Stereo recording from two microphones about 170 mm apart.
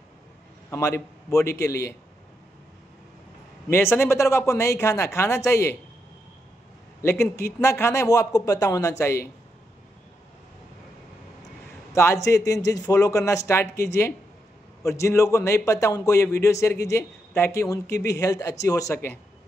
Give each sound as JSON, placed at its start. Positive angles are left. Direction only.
{"t": 0.7, "sound": "a man's voice", "side_deg": 15}
{"t": 3.7, "sound": "a man's voice", "side_deg": 15}
{"t": 7.0, "sound": "a man's voice", "side_deg": 15}
{"t": 11.9, "sound": "a man's voice", "side_deg": 15}